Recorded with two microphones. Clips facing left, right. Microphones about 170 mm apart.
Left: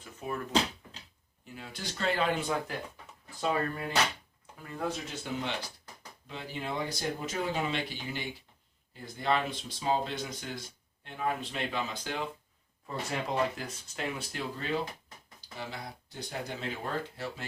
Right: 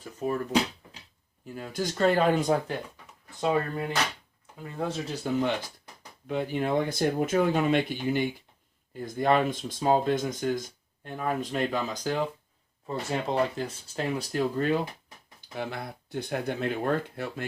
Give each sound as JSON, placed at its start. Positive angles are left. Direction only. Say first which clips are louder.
{"t": 0.0, "sound": "speech", "louder": "right 8 dB", "side_deg": -35}
{"t": 1.5, "sound": "speech", "louder": "right 10 dB", "side_deg": -45}
{"t": 3.4, "sound": "speech", "louder": "right 4 dB", "side_deg": -25}
{"t": 6.2, "sound": "speech", "louder": "right 10 dB", "side_deg": -55}
{"t": 12.9, "sound": "speech", "louder": "right 5 dB", "side_deg": -25}
{"t": 15.4, "sound": "speech", "louder": "right 7 dB", "side_deg": -55}